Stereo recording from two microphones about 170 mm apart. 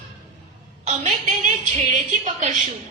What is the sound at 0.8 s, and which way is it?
A woman's voice, 50° right (ahead or behind).